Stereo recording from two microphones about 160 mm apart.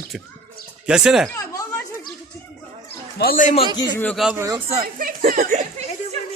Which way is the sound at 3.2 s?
60° left (ahead or behind).